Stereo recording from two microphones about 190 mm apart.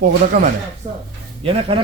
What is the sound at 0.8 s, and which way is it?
Speech, 25° right (ahead or behind).